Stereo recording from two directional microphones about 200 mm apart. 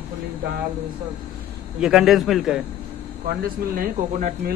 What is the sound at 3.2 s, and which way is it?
Speech, 45° right (ahead or behind).